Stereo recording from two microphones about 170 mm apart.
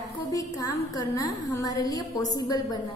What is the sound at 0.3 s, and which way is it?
A woman's voice, 20° left (ahead or behind).